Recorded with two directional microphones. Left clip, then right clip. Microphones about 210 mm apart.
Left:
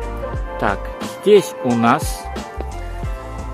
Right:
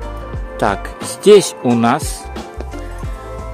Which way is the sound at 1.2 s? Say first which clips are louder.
Right 4 dB; 50° right (ahead or behind).